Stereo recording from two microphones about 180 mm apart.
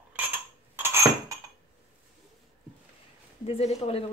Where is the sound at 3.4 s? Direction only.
35° left (ahead or behind).